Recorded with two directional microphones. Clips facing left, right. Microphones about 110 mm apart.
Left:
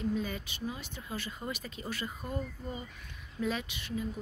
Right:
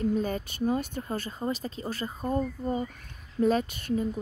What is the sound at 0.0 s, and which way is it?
Speech, 45° right (ahead or behind).